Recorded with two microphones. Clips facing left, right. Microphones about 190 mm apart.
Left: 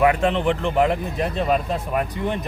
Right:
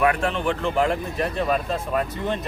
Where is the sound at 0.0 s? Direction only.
20° left (ahead or behind).